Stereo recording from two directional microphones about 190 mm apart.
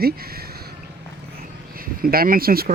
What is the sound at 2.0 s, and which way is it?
Speech, 50° right (ahead or behind).